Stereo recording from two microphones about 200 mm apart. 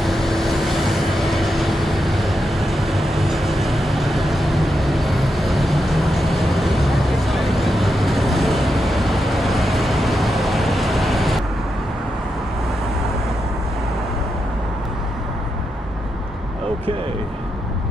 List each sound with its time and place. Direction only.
0.0 s vehicle: centre (ahead or behind)